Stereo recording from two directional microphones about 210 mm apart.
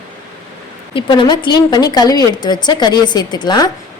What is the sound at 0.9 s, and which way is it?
A woman's voice, 25° left (ahead or behind).